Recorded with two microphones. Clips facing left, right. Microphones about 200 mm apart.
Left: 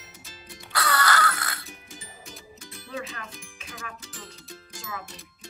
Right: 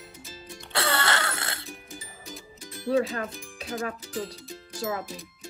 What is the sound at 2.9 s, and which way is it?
Speech, 35° right (ahead or behind).